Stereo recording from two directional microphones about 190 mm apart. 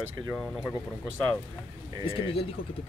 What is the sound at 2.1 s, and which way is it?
Speech, 30° left (ahead or behind).